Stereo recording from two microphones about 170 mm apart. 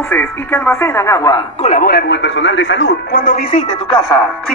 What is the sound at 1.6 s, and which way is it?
Speech, 50° left (ahead or behind).